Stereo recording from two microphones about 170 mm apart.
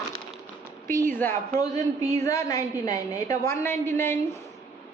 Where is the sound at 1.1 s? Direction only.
10° left (ahead or behind).